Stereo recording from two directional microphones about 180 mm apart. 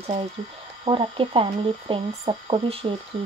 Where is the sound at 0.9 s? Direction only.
30° right (ahead or behind).